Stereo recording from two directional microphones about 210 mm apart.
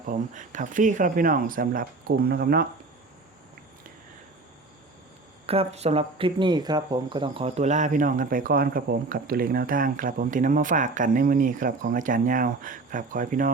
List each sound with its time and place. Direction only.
0.1 s speech: 40° right (ahead or behind)
5.5 s speech: 30° right (ahead or behind)